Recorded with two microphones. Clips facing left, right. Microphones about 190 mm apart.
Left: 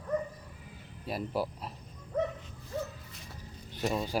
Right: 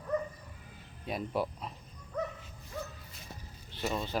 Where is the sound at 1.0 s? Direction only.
5° left (ahead or behind).